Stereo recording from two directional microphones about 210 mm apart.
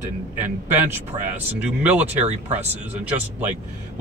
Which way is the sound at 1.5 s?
10° right (ahead or behind).